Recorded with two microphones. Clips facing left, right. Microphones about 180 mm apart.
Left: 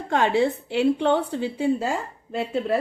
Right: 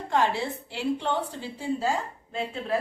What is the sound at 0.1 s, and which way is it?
A woman's voice, 65° left (ahead or behind).